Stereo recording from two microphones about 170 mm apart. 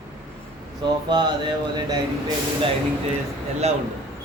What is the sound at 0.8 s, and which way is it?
Speech, 25° right (ahead or behind).